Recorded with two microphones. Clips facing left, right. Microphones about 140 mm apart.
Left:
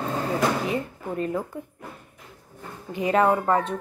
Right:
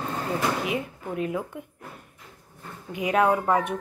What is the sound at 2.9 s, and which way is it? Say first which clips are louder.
Speech: left 1 dB; 5° right (ahead or behind).